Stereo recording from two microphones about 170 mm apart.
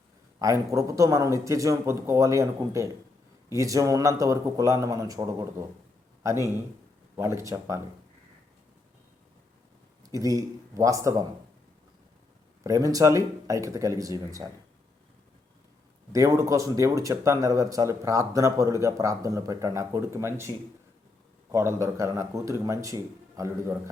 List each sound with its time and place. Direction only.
0.3 s speech: 20° right (ahead or behind)
7.2 s speech: 15° right (ahead or behind)
10.0 s speech: 20° right (ahead or behind)
12.6 s speech: 20° right (ahead or behind)
16.1 s speech: 20° right (ahead or behind)
21.8 s speech: 15° right (ahead or behind)